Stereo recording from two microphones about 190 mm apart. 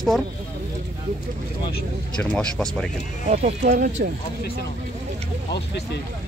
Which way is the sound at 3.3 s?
40° right (ahead or behind).